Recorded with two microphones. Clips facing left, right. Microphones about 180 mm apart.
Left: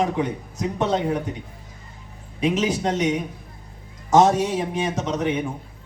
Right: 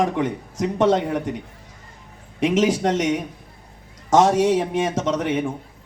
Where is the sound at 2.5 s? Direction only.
90° right.